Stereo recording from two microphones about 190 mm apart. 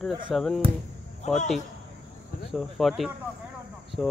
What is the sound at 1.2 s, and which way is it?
Speech, 35° left (ahead or behind).